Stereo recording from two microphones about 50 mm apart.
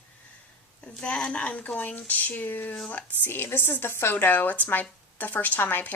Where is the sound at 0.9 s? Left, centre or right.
Left.